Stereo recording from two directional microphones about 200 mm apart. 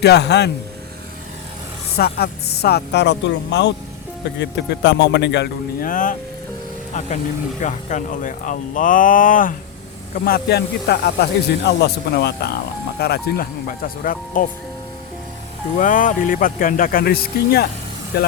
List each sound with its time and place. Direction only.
0.0 s speech: 55° left (ahead or behind)
2.0 s speech: 50° left (ahead or behind)
7.6 s speech: 40° left (ahead or behind)
15.8 s speech: 40° left (ahead or behind)